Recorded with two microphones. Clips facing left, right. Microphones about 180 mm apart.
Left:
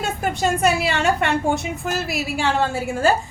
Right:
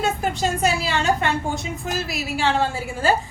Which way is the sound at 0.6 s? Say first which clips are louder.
Left 3 dB; 65° left (ahead or behind).